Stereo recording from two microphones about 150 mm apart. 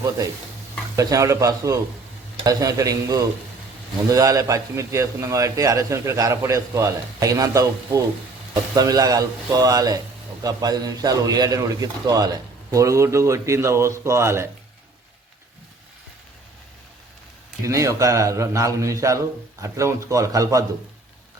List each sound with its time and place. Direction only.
0.9 s a man's voice: 20° right (ahead or behind)
17.7 s a man's voice: 20° right (ahead or behind)